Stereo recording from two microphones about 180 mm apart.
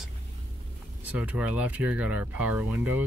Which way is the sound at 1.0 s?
5° right (ahead or behind).